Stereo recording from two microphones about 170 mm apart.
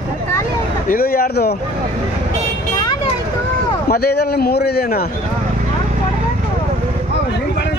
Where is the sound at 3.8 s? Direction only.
65° left (ahead or behind).